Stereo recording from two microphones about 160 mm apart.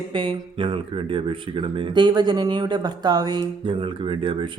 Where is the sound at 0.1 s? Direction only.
30° right (ahead or behind).